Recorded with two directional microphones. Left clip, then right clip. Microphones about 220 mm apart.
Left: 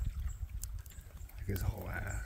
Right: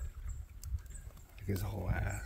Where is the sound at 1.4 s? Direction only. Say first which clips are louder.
Right 2 dB; 20° right (ahead or behind).